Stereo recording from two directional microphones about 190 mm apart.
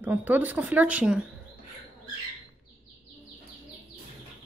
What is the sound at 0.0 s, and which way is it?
Speech, 10° right (ahead or behind).